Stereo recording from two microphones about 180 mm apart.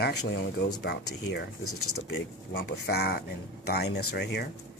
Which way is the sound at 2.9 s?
60° left (ahead or behind).